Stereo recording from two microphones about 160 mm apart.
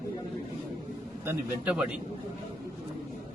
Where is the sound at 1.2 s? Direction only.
10° right (ahead or behind).